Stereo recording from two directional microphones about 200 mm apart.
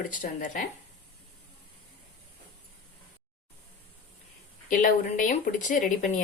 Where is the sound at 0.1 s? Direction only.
40° left (ahead or behind).